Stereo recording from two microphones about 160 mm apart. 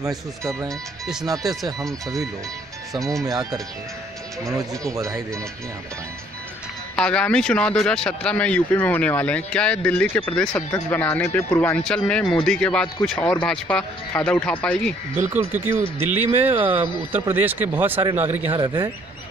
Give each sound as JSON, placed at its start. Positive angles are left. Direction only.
{"t": 0.4, "sound": "speech", "side_deg": -20}
{"t": 1.6, "sound": "speech", "side_deg": 0}
{"t": 3.1, "sound": "speech", "side_deg": -20}
{"t": 7.0, "sound": "speech", "side_deg": 5}
{"t": 15.2, "sound": "speech", "side_deg": -10}
{"t": 18.5, "sound": "speech", "side_deg": -30}